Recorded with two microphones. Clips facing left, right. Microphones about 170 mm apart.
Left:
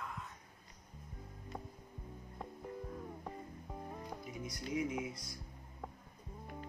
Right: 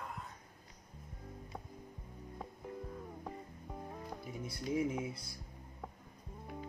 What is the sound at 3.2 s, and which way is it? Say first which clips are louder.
Music: even; centre (ahead or behind).